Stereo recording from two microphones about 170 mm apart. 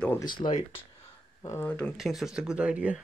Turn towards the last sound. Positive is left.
turn(degrees=-5)  # may be behind; listen again after turning